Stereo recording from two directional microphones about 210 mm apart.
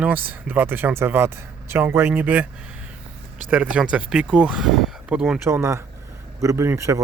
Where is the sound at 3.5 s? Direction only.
5° right (ahead or behind).